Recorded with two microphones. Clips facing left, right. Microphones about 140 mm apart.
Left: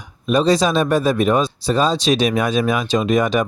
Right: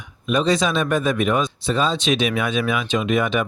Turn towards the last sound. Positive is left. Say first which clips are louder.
# left 3 dB
turn(degrees=40)  # may be behind; listen again after turning